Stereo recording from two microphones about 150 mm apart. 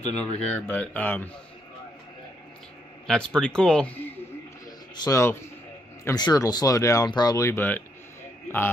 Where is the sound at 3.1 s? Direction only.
5° left (ahead or behind).